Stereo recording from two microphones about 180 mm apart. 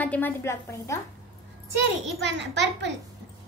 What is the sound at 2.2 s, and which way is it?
Speech, 75° right (ahead or behind).